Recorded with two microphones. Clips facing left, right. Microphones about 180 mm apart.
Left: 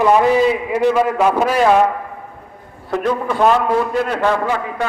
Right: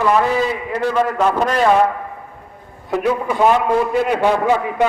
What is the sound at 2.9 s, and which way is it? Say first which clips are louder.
A man's voice: even; 5° right (ahead or behind).